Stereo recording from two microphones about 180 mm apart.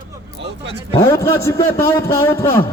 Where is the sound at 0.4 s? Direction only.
75° right (ahead or behind).